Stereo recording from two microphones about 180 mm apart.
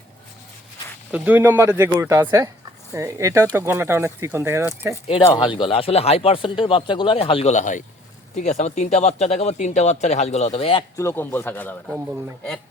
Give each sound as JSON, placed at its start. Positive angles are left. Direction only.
{"t": 1.1, "sound": "speech", "side_deg": -10}
{"t": 5.3, "sound": "speech", "side_deg": 25}
{"t": 10.9, "sound": "a man's voice", "side_deg": 15}